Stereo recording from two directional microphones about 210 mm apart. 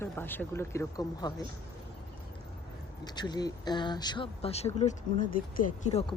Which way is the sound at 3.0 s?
20° left (ahead or behind).